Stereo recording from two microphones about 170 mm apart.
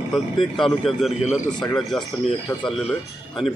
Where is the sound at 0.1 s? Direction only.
Centre (ahead or behind).